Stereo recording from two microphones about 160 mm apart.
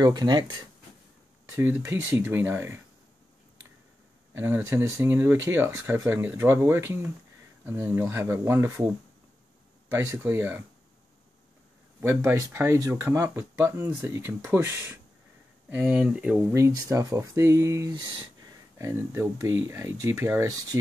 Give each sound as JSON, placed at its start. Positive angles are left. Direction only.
{"t": 0.0, "sound": "speech", "side_deg": -25}
{"t": 1.5, "sound": "speech", "side_deg": -15}
{"t": 4.3, "sound": "speech", "side_deg": -15}
{"t": 9.9, "sound": "speech", "side_deg": -15}
{"t": 12.0, "sound": "speech", "side_deg": -15}